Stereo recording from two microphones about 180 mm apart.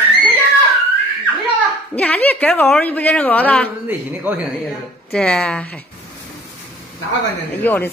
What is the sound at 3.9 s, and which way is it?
Speech, 10° right (ahead or behind).